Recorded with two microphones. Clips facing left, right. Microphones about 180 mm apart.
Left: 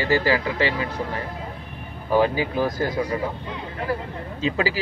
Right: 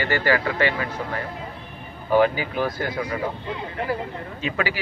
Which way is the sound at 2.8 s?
35° left (ahead or behind).